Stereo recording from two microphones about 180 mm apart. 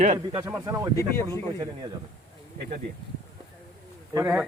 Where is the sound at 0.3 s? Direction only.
15° right (ahead or behind).